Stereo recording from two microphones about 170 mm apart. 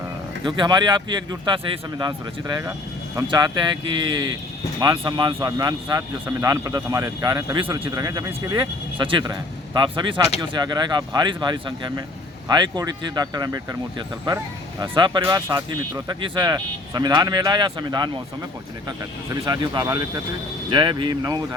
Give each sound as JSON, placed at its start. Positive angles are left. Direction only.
{"t": 0.4, "sound": "speech", "side_deg": -25}
{"t": 14.8, "sound": "speech", "side_deg": -25}